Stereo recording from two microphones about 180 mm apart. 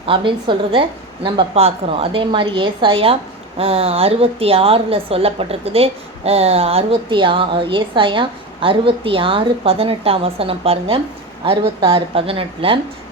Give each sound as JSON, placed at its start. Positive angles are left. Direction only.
{"t": 0.0, "sound": "a woman's voice", "side_deg": -30}